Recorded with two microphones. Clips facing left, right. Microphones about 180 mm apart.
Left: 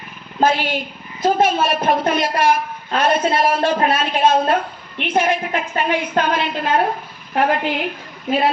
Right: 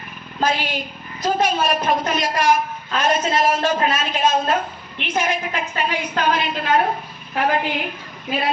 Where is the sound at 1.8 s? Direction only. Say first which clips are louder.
Left 3 dB; 55° left (ahead or behind).